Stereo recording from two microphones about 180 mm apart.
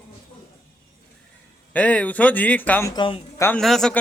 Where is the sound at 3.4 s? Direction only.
5° left (ahead or behind).